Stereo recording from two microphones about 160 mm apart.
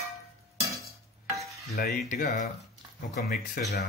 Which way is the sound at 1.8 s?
75° left (ahead or behind).